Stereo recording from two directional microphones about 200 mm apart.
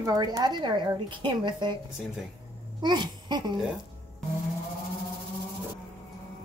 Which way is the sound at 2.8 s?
20° right (ahead or behind).